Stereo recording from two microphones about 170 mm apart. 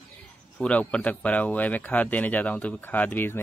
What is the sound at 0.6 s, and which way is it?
Speech, 5° left (ahead or behind).